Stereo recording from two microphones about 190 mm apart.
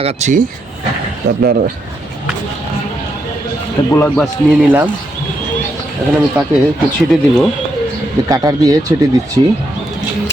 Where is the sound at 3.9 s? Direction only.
10° left (ahead or behind).